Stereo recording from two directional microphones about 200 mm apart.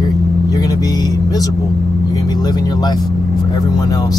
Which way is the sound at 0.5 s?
20° left (ahead or behind).